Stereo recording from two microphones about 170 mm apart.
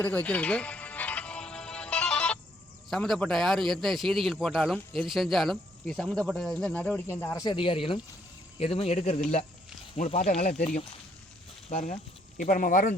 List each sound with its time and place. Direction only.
0.0 s music: 10° left (ahead or behind)
2.9 s a man's voice: centre (ahead or behind)
7.4 s speech: 30° left (ahead or behind)
12.4 s speech: 50° left (ahead or behind)